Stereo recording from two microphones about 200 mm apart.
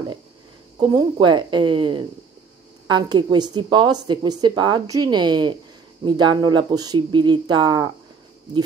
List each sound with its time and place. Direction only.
0.7 s a woman's voice: 20° right (ahead or behind)